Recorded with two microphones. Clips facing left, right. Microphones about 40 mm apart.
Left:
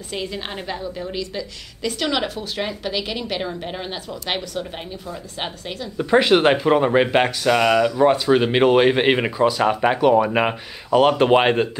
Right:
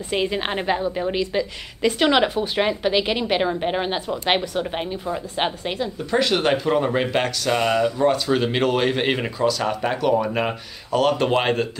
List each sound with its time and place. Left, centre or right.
0.1 s a woman's voice: right
5.9 s speech: left
7.5 s speech: left
8.0 s speech: centre